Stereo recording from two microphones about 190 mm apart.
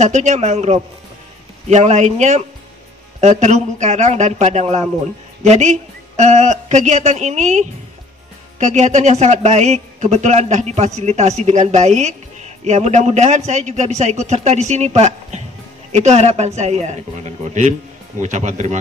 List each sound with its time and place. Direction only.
0.0 s a woman's voice: 40° right (ahead or behind)
18.2 s a woman's voice: 40° right (ahead or behind)